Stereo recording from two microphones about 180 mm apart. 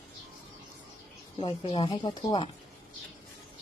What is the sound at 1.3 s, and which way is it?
A woman's voice, 30° left (ahead or behind).